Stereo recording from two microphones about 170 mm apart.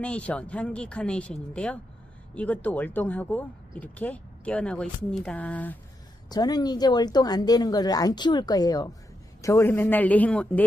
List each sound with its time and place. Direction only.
0.0 s speech: 10° left (ahead or behind)
6.2 s speech: 25° left (ahead or behind); by 10.6 s 10° left (ahead or behind)